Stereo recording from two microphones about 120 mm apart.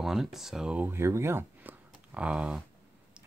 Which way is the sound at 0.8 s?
20° right (ahead or behind).